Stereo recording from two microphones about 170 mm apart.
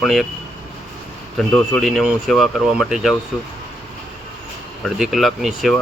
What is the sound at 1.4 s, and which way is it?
Speech, centre (ahead or behind).